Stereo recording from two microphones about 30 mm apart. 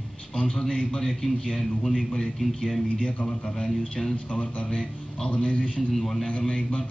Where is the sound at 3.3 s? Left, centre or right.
Left.